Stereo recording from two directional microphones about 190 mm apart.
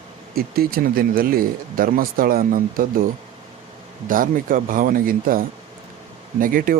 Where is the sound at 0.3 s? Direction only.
50° right (ahead or behind).